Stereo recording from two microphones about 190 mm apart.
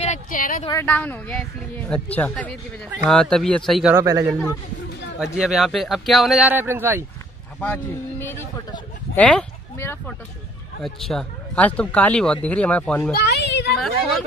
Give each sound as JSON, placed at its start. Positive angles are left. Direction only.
{"t": 0.0, "sound": "a sound", "side_deg": 40}
{"t": 0.7, "sound": "speech", "side_deg": 10}
{"t": 3.9, "sound": "speech", "side_deg": -15}
{"t": 5.2, "sound": "speech", "side_deg": 0}
{"t": 7.6, "sound": "speech", "side_deg": 10}
{"t": 13.1, "sound": "a child's voice", "side_deg": 60}